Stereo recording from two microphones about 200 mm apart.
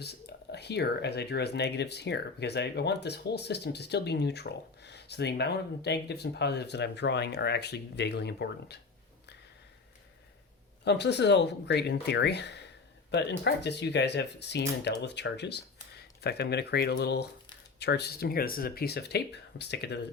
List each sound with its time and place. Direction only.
0.0 s speech: 55° left (ahead or behind)
10.8 s speech: 60° left (ahead or behind)